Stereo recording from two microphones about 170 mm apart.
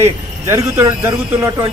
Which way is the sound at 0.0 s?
15° right (ahead or behind).